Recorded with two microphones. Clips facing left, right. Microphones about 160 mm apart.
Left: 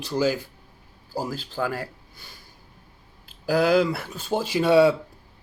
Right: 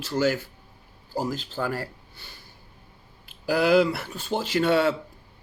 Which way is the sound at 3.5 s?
5° right (ahead or behind).